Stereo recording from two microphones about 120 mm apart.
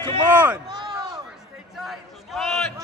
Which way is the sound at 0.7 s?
35° right (ahead or behind).